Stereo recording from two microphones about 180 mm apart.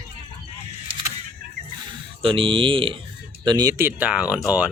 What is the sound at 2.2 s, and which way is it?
Speech, 30° right (ahead or behind).